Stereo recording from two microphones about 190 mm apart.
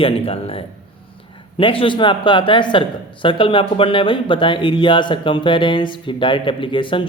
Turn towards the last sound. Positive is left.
turn(degrees=25)  # may be behind; listen again after turning